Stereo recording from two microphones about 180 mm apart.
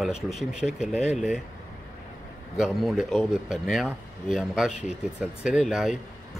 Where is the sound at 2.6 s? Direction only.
Centre (ahead or behind).